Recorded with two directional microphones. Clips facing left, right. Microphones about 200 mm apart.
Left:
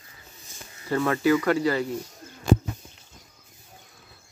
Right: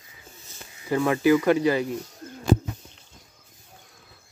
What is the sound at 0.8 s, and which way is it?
Speech, 15° right (ahead or behind).